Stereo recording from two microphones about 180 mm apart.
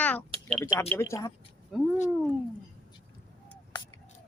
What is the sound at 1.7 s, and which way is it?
Speech, centre (ahead or behind).